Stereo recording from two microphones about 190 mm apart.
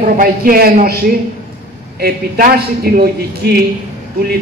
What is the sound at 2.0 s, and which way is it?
Speech, 55° right (ahead or behind).